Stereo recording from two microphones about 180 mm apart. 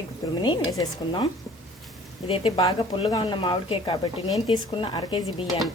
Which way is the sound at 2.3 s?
30° left (ahead or behind).